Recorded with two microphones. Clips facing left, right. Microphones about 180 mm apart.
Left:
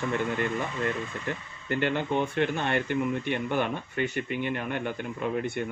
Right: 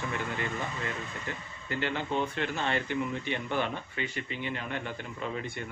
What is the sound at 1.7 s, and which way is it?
Speech, 55° left (ahead or behind).